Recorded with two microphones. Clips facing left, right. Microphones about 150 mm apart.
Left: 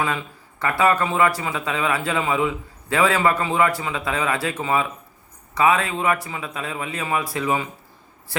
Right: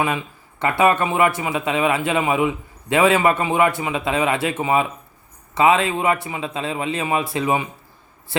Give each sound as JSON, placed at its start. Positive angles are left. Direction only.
{"t": 0.0, "sound": "speech", "side_deg": -20}